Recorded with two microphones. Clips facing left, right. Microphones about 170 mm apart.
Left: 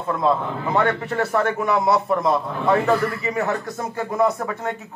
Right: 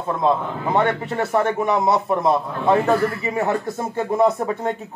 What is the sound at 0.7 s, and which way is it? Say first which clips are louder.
A man's voice: even; 20° right (ahead or behind).